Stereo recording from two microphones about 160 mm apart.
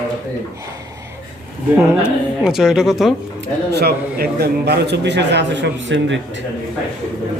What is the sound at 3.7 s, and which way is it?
A man's voice, 85° right.